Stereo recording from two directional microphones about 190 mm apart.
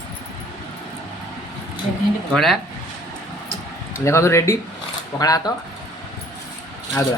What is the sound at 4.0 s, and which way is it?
Speech, 15° left (ahead or behind).